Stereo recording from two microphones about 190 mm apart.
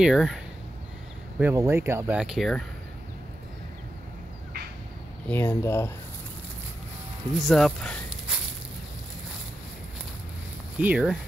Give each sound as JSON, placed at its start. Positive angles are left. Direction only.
{"t": 0.0, "sound": "speech", "side_deg": 0}
{"t": 1.4, "sound": "speech", "side_deg": -15}
{"t": 5.3, "sound": "speech", "side_deg": 10}
{"t": 7.4, "sound": "a sound", "side_deg": 0}
{"t": 10.8, "sound": "speech", "side_deg": -5}